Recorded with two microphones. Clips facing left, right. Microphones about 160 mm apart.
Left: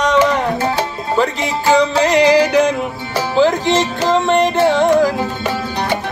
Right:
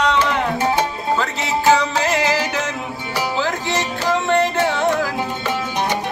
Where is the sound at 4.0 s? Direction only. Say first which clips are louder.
Left 1 dB; 20° left (ahead or behind).